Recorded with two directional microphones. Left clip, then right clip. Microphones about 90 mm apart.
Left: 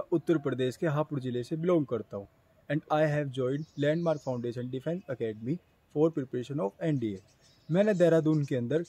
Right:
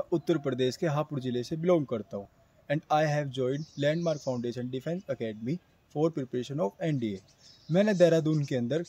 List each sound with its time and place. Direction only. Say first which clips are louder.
0.1 s speech: left 2 dB; 40° left (ahead or behind)